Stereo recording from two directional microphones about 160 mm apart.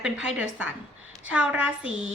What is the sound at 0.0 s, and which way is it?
A woman's voice, 5° right (ahead or behind).